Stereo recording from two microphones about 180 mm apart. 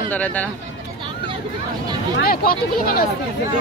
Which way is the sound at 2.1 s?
55° left (ahead or behind).